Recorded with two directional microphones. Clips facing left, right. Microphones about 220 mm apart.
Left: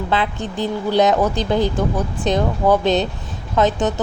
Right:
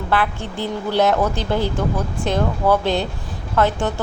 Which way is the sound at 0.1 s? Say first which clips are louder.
Right 2 dB; 20° left (ahead or behind).